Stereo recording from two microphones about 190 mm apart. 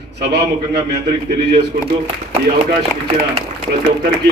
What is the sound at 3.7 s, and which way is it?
Speech, 50° right (ahead or behind).